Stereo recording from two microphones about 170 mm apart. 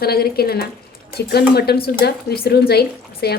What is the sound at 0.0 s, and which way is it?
A woman's voice, 65° left (ahead or behind).